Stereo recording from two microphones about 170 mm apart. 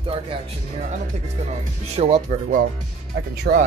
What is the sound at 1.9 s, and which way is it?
Speech, 40° right (ahead or behind).